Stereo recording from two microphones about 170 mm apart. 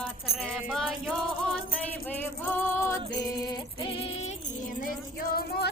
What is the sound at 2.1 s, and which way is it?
Music, 10° left (ahead or behind).